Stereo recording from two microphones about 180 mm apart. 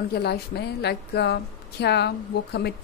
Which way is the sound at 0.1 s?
65° left (ahead or behind).